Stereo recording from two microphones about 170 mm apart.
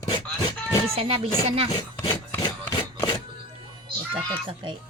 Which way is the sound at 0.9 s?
35° right (ahead or behind).